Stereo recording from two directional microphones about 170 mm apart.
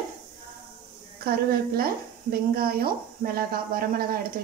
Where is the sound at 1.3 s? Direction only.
65° right (ahead or behind).